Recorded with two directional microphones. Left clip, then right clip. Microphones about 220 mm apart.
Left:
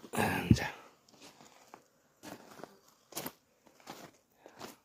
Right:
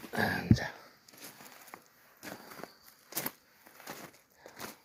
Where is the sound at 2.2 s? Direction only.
35° right (ahead or behind).